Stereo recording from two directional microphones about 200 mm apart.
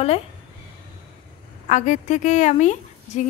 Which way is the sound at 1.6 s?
40° left (ahead or behind).